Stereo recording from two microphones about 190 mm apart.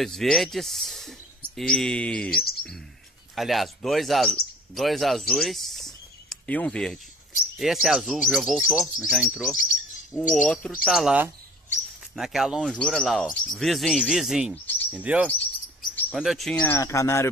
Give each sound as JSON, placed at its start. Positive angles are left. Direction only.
{"t": 0.0, "sound": "speech", "side_deg": 0}
{"t": 2.3, "sound": "speech", "side_deg": 55}
{"t": 3.3, "sound": "speech", "side_deg": 0}
{"t": 14.5, "sound": "chirp", "side_deg": 10}
{"t": 14.9, "sound": "chirp", "side_deg": -5}
{"t": 16.1, "sound": "speech", "side_deg": 0}